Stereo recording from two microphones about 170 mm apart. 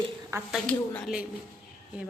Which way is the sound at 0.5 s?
5° left (ahead or behind).